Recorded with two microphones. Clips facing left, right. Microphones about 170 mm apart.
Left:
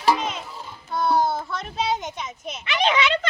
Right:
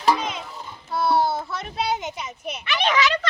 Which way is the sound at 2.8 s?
30° left (ahead or behind).